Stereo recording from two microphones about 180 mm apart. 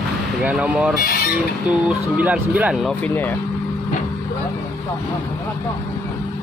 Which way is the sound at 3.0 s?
10° left (ahead or behind).